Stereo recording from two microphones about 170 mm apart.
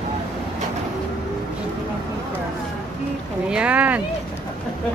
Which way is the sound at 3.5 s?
5° right (ahead or behind).